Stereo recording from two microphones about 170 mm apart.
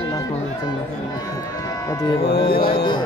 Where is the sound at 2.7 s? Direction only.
30° left (ahead or behind).